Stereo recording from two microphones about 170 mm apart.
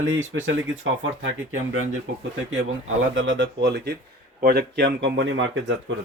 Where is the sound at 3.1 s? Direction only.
90° right.